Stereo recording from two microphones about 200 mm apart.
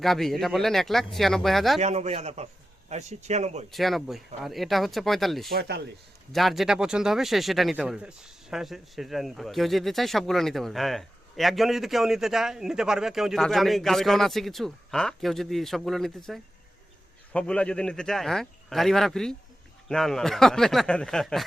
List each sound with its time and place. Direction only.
0.0 s speech: centre (ahead or behind)
1.8 s speech: 35° right (ahead or behind)
3.7 s speech: centre (ahead or behind)
5.5 s speech: 55° right (ahead or behind)
6.3 s speech: centre (ahead or behind)